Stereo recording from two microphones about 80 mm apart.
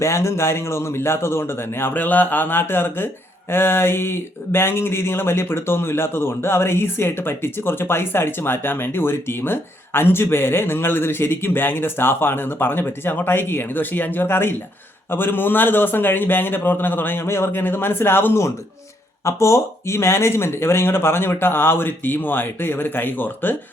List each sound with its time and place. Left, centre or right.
0.0 s a man's voice: left
19.2 s speech: left